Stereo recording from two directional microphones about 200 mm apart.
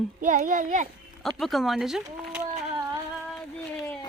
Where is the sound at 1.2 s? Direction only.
Centre (ahead or behind).